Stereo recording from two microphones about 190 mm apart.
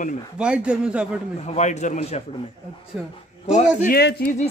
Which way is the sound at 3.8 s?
55° left (ahead or behind).